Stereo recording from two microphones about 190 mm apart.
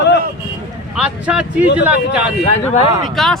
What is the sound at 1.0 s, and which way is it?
Speech, 5° right (ahead or behind).